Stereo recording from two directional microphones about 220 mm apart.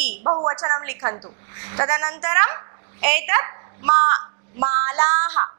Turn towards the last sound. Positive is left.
turn(degrees=-20)  # may be behind; listen again after turning